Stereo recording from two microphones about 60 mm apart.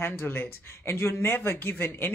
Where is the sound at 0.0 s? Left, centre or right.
Left.